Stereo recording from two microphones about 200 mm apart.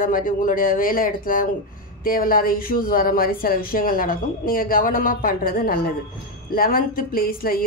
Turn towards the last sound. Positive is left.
turn(degrees=45)  # may be behind; listen again after turning